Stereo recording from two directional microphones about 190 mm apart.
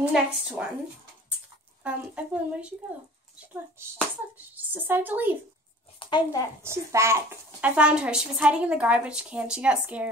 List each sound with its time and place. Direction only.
0.0 s a woman's voice: 5° right (ahead or behind)
1.8 s speech: 5° right (ahead or behind)
4.4 s speech: 10° right (ahead or behind)
5.9 s speech: 25° left (ahead or behind)
6.6 s a woman's voice: 15° right (ahead or behind)